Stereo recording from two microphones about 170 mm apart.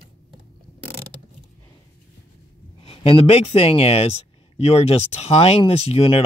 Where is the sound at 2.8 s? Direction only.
35° left (ahead or behind).